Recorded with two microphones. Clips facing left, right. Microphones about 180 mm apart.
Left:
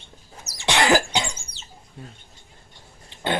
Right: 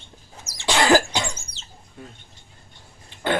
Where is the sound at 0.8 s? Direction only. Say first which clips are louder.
Right 2 dB; 20° left (ahead or behind).